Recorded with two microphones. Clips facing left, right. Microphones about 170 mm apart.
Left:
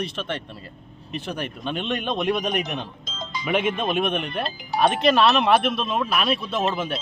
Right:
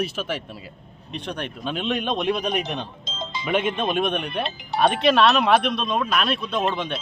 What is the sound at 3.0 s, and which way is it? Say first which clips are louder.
Music: right 1 dB; 25° right (ahead or behind).